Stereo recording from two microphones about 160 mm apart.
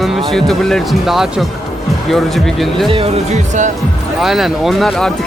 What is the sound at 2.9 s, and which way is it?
Speech, 40° right (ahead or behind).